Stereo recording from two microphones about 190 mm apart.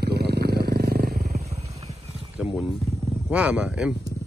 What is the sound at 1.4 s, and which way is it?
Vehicle, 35° right (ahead or behind).